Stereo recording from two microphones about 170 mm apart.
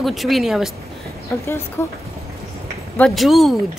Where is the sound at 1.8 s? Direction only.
15° left (ahead or behind).